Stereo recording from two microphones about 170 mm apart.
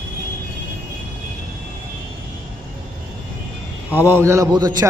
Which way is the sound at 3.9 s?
10° right (ahead or behind).